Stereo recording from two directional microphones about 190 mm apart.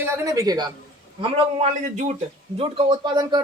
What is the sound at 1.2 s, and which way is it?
Speech, 40° right (ahead or behind).